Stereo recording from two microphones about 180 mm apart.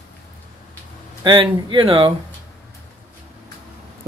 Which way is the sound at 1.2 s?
30° right (ahead or behind).